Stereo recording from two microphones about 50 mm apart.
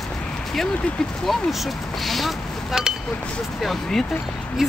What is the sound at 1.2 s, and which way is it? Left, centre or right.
Speech, centre.